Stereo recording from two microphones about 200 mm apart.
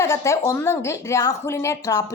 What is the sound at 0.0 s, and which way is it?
A woman's voice, 15° left (ahead or behind).